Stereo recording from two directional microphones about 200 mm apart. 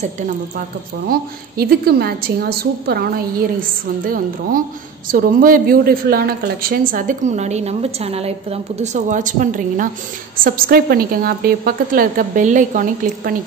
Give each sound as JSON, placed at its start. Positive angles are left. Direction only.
{"t": 1.0, "sound": "a woman's voice", "side_deg": -50}